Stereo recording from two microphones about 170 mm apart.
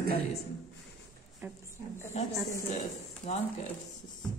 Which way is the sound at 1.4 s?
10° right (ahead or behind).